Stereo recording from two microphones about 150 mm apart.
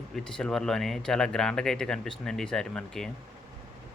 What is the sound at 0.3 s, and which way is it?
Speech, 5° left (ahead or behind).